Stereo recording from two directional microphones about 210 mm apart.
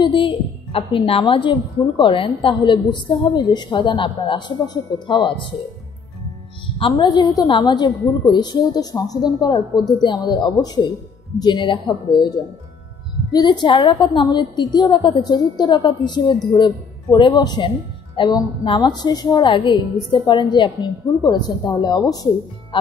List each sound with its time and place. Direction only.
0.0 s a woman's voice: 25° left (ahead or behind)
6.8 s a woman's voice: 20° left (ahead or behind)